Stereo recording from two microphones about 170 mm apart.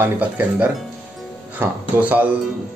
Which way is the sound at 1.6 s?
10° right (ahead or behind).